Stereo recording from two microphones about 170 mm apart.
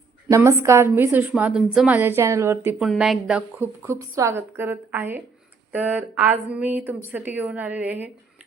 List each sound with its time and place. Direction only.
0.3 s a woman's voice: 20° right (ahead or behind)
2.7 s a woman's voice: centre (ahead or behind)